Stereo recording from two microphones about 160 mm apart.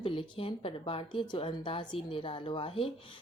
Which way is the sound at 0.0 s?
35° left (ahead or behind).